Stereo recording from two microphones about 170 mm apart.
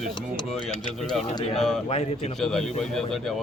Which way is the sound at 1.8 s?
35° left (ahead or behind).